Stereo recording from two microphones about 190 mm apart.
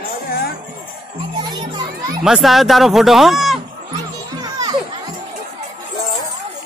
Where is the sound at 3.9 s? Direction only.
20° right (ahead or behind).